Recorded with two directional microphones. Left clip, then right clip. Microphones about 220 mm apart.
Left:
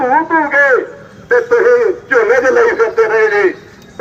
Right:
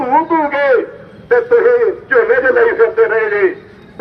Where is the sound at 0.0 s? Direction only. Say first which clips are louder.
Left 1 dB; centre (ahead or behind).